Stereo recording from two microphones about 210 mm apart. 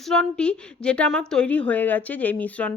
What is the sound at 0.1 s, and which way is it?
A woman's voice, 5° left (ahead or behind).